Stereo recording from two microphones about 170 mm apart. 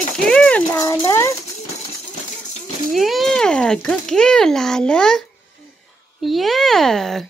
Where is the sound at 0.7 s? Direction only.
20° left (ahead or behind).